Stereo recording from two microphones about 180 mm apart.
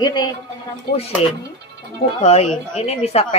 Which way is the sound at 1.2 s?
35° left (ahead or behind).